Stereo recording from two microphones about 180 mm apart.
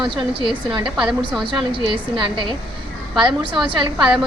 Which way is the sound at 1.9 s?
25° right (ahead or behind).